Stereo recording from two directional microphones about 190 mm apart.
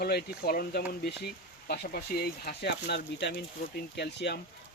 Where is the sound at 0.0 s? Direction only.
55° left (ahead or behind).